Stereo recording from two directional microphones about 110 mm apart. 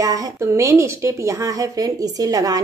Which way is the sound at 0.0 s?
35° right (ahead or behind).